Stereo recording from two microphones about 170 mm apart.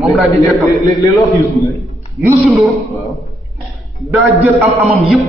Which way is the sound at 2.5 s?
Centre (ahead or behind).